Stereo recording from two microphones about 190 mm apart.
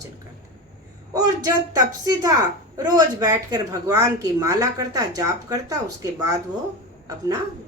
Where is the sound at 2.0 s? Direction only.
20° right (ahead or behind).